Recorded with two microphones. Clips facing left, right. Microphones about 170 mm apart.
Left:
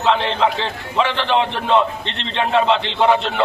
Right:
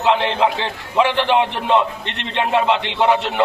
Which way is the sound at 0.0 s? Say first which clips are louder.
Right 1 dB; 15° right (ahead or behind).